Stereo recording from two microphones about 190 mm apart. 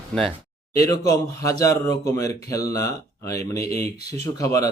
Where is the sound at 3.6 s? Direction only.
35° right (ahead or behind).